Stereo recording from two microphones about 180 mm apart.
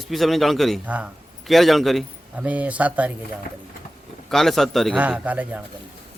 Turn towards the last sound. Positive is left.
turn(degrees=-10)  # may be behind; listen again after turning